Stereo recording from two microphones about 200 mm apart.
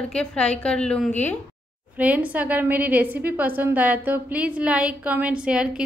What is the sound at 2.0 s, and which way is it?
A woman's voice, 5° right (ahead or behind).